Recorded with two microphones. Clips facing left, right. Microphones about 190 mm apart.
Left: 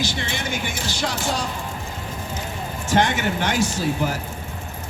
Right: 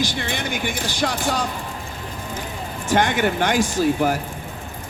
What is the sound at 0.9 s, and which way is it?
Speech, 55° right (ahead or behind).